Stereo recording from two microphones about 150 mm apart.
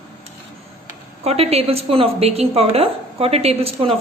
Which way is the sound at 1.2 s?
40° right (ahead or behind).